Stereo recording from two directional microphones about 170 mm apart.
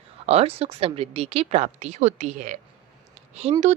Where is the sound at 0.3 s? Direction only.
35° right (ahead or behind).